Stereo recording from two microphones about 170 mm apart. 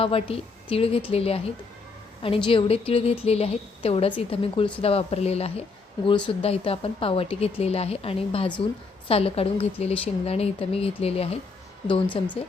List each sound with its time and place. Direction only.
0.0 s speech: 35° left (ahead or behind)